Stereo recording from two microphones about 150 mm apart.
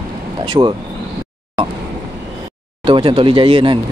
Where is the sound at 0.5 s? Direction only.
30° right (ahead or behind).